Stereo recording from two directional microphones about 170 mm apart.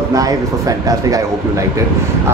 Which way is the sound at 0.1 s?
20° right (ahead or behind).